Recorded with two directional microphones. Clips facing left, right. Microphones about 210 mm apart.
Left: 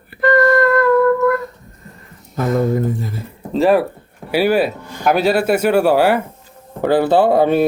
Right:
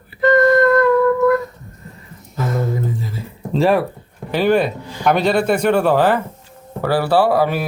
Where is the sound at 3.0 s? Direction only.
55° left (ahead or behind).